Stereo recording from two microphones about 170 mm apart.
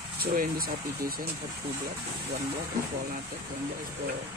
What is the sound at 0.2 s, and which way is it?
Speech, 60° right (ahead or behind).